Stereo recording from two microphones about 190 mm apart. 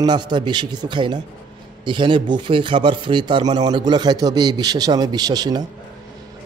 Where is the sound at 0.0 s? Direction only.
20° right (ahead or behind).